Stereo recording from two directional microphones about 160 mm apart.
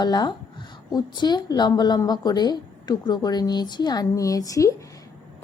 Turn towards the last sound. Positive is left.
turn(degrees=20)  # may be behind; listen again after turning